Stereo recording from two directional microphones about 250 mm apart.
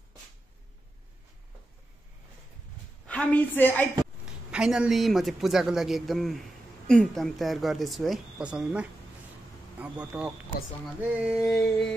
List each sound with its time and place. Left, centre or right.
3.1 s a woman's voice: centre
4.5 s a man's voice: centre
10.1 s a man's voice: centre